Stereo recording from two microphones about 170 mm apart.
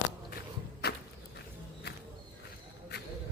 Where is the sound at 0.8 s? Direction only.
70° left (ahead or behind).